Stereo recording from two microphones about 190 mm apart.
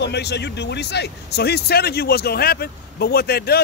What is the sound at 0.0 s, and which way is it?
Speech, 60° left (ahead or behind).